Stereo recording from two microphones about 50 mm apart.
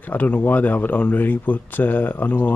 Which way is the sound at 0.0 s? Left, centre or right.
Left.